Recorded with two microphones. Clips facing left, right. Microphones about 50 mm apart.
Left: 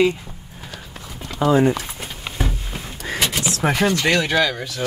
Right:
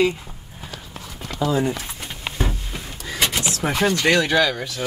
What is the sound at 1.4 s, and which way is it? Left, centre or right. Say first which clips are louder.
Speech: left 5 dB; left.